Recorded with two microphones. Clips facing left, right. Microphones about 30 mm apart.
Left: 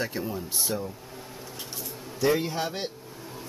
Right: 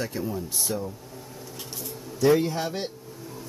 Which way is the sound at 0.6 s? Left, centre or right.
Centre.